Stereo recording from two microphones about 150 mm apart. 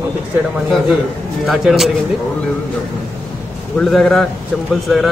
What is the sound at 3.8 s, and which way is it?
Speech, 5° left (ahead or behind).